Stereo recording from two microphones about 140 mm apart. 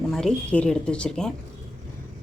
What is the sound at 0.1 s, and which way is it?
Speech, 5° left (ahead or behind).